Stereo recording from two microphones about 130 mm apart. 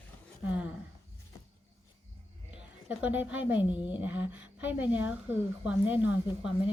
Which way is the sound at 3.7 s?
35° left (ahead or behind).